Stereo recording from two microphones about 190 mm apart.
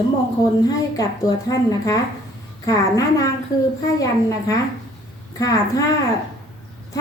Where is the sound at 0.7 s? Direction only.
20° left (ahead or behind).